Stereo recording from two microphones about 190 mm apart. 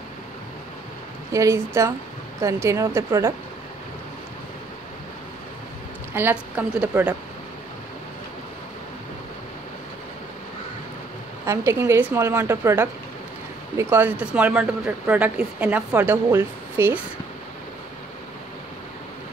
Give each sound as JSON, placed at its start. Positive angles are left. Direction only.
{"t": 1.3, "sound": "speech", "side_deg": -15}
{"t": 6.1, "sound": "speech", "side_deg": -10}
{"t": 11.4, "sound": "speech", "side_deg": -15}